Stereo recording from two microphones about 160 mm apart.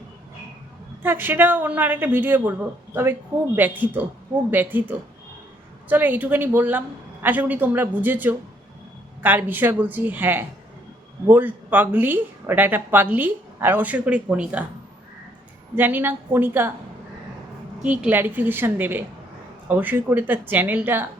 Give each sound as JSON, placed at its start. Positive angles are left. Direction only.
{"t": 1.0, "sound": "speech", "side_deg": -10}
{"t": 15.7, "sound": "speech", "side_deg": -10}
{"t": 18.0, "sound": "speech", "side_deg": -10}